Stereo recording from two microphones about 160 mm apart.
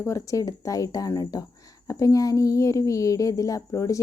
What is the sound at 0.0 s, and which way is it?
A woman's voice, 20° left (ahead or behind).